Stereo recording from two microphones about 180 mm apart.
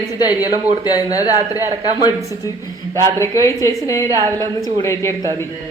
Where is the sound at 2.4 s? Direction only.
15° left (ahead or behind).